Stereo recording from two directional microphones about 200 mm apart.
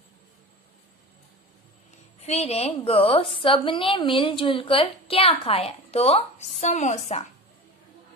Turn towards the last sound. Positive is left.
turn(degrees=35)  # may be behind; listen again after turning